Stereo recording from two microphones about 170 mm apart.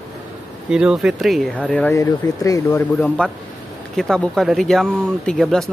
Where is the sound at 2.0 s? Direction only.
20° left (ahead or behind).